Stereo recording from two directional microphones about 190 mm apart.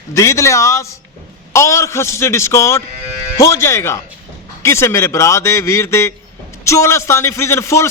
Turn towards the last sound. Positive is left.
turn(degrees=15)  # may be behind; listen again after turning